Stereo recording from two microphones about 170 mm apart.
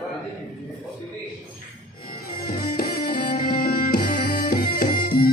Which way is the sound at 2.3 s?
60° left (ahead or behind).